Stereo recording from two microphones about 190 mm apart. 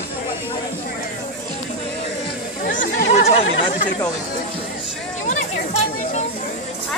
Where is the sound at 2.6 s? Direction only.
45° left (ahead or behind).